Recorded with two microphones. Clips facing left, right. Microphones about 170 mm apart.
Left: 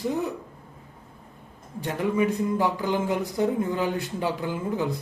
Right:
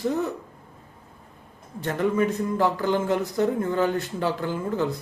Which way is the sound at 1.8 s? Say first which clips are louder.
Right 1 dB; 15° left (ahead or behind).